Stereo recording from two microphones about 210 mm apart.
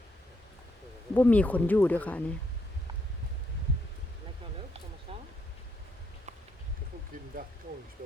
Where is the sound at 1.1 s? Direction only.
10° left (ahead or behind).